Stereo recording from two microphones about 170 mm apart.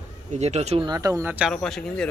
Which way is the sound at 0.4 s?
40° right (ahead or behind).